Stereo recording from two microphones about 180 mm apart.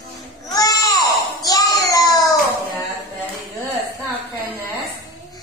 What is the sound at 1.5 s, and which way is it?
Child singing, 20° left (ahead or behind).